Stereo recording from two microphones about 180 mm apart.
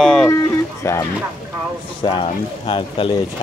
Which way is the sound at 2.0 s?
30° left (ahead or behind).